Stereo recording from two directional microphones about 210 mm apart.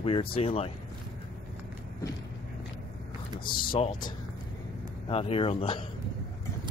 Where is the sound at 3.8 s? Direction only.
40° left (ahead or behind).